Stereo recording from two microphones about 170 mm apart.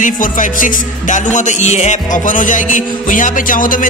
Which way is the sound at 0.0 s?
50° left (ahead or behind).